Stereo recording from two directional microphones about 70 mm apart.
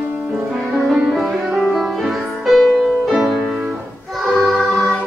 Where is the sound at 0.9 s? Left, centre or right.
Centre.